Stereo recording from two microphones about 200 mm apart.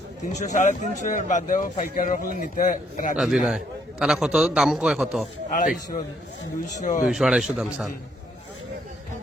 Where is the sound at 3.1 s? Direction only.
5° right (ahead or behind).